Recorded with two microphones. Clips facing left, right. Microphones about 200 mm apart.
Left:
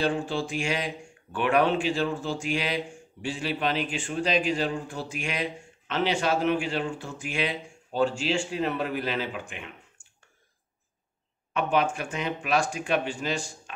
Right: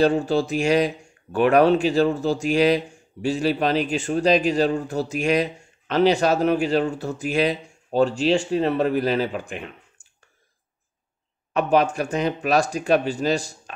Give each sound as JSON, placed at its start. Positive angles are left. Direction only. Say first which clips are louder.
{"t": 0.0, "sound": "speech", "louder": "right 8 dB", "side_deg": -40}
{"t": 11.5, "sound": "speech", "louder": "right 6 dB", "side_deg": -40}